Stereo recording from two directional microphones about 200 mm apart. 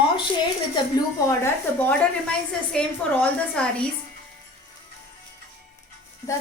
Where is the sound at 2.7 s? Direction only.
5° left (ahead or behind).